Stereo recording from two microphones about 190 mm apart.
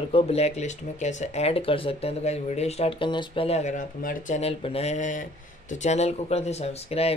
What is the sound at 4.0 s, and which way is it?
Speech, 45° left (ahead or behind).